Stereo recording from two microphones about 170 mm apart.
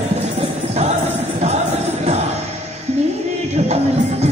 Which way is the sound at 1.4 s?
40° right (ahead or behind).